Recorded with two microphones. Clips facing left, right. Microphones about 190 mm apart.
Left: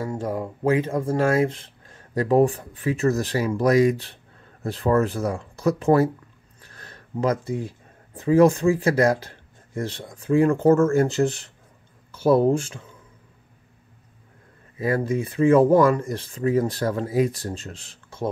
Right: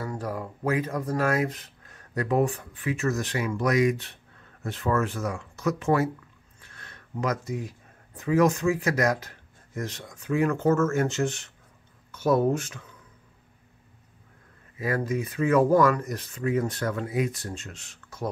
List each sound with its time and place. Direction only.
0.0 s speech: 25° left (ahead or behind)
14.8 s speech: 30° left (ahead or behind)